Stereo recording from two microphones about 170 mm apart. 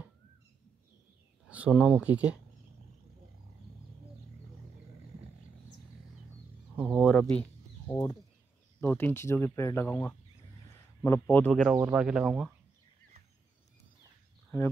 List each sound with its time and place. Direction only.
1.5 s speech: 5° right (ahead or behind)
6.8 s a sound: 5° right (ahead or behind)
7.9 s speech: 20° left (ahead or behind)
11.7 s speech: 10° right (ahead or behind)